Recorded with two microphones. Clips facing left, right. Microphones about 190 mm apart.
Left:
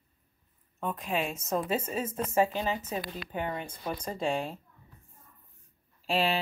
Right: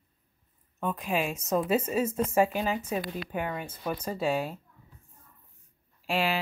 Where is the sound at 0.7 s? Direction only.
5° right (ahead or behind).